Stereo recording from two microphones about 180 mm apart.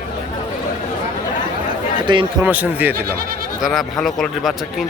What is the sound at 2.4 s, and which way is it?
Speech, 10° right (ahead or behind).